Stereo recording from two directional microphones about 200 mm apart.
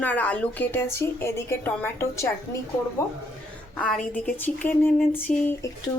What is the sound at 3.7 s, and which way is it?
Speech, 5° left (ahead or behind).